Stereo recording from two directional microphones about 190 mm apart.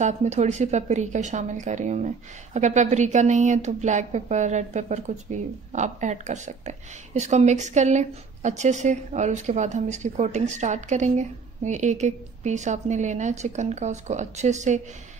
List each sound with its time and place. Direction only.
0.0 s a woman's voice: 35° right (ahead or behind)